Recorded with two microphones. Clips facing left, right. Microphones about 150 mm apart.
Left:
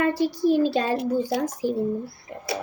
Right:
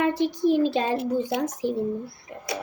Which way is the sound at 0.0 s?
20° right (ahead or behind).